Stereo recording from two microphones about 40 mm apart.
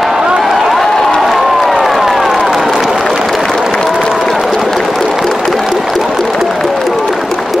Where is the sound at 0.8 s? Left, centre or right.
Centre.